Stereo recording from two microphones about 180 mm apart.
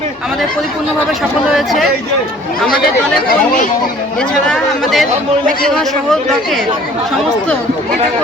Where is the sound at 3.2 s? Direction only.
55° left (ahead or behind).